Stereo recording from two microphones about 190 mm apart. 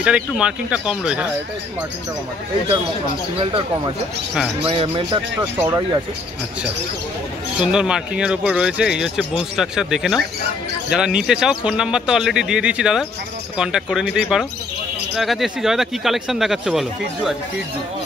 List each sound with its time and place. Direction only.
0.0 s speech: 5° right (ahead or behind)
3.3 s speech: 30° right (ahead or behind)
5.4 s speech: 10° right (ahead or behind)
7.6 s speech: 5° right (ahead or behind)